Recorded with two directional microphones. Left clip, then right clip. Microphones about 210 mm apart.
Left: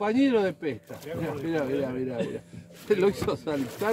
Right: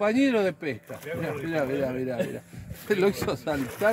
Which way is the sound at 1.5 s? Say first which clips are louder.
Right 1 dB; 55° right (ahead or behind).